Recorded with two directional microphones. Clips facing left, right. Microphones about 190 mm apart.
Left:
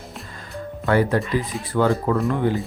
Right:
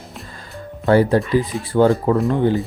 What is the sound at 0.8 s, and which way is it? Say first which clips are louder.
Speech: right 5 dB; 30° right (ahead or behind).